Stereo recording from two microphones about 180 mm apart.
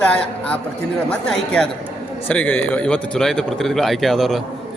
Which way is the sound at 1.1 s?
5° left (ahead or behind).